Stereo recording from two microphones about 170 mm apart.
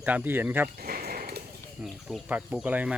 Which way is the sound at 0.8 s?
60° right (ahead or behind).